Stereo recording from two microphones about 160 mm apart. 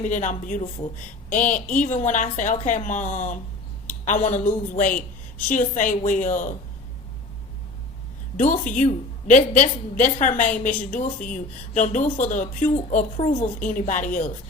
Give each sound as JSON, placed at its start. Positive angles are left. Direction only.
{"t": 0.0, "sound": "a woman's voice", "side_deg": 50}
{"t": 8.4, "sound": "a woman's voice", "side_deg": 50}